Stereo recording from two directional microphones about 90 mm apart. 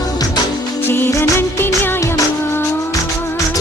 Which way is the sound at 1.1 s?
25° left (ahead or behind).